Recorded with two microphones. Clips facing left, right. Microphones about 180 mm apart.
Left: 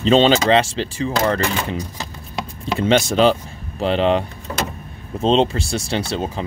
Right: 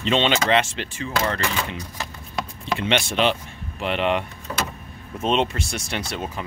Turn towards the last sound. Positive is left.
turn(degrees=30)  # may be behind; listen again after turning